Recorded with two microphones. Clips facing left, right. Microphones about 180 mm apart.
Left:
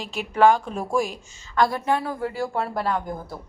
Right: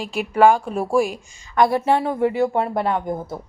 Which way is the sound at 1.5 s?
25° right (ahead or behind).